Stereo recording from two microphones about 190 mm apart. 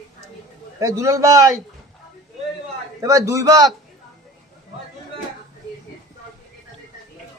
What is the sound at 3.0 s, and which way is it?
Speech, 15° right (ahead or behind).